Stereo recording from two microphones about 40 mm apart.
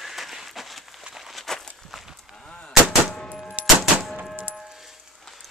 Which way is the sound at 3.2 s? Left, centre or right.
Centre.